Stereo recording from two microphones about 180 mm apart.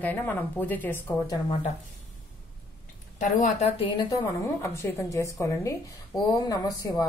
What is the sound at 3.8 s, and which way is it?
A woman's voice, 25° left (ahead or behind).